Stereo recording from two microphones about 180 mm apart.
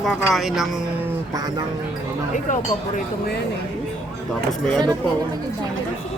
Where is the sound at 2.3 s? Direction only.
45° left (ahead or behind).